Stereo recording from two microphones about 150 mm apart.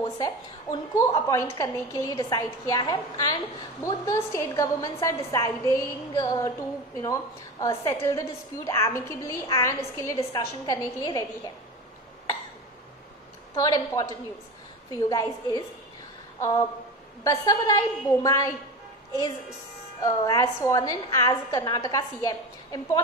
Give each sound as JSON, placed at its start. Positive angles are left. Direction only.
{"t": 0.2, "sound": "a woman's voice", "side_deg": 20}
{"t": 7.6, "sound": "a woman's voice", "side_deg": 20}
{"t": 13.6, "sound": "a woman's voice", "side_deg": 25}
{"t": 16.3, "sound": "a sound", "side_deg": 20}
{"t": 17.2, "sound": "a woman's voice", "side_deg": 25}
{"t": 20.0, "sound": "a woman's voice", "side_deg": 20}